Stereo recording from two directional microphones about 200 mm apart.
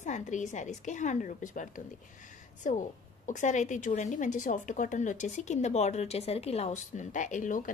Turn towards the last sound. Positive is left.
turn(degrees=40)  # may be behind; listen again after turning